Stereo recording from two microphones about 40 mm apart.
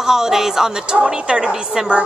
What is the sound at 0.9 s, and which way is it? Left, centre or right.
Speech, right.